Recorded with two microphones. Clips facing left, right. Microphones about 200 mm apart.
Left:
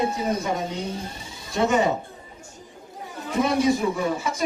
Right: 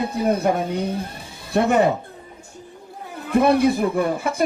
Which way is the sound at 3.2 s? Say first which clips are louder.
Right 5 dB; 60° right (ahead or behind).